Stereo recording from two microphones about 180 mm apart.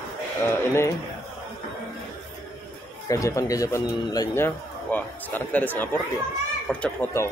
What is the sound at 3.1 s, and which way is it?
Speech, 15° left (ahead or behind).